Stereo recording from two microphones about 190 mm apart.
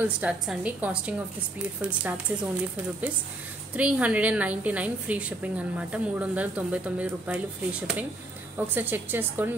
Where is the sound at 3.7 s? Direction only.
5° right (ahead or behind).